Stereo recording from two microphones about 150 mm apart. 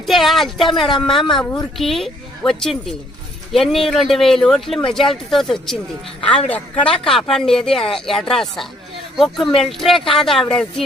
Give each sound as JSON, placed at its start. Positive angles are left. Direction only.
{"t": 0.0, "sound": "a sound", "side_deg": 0}
{"t": 0.9, "sound": "a woman's voice", "side_deg": 30}
{"t": 1.1, "sound": "speech", "side_deg": 5}